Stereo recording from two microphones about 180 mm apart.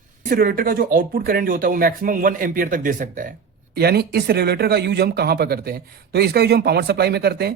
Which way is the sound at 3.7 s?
60° right (ahead or behind).